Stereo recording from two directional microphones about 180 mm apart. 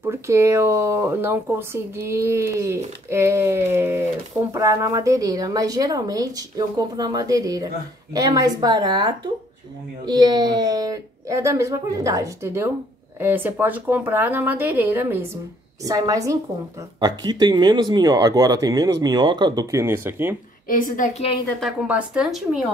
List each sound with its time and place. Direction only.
0.0 s speech: 15° right (ahead or behind)
20.6 s a woman's voice: 50° left (ahead or behind)
21.5 s speech: centre (ahead or behind)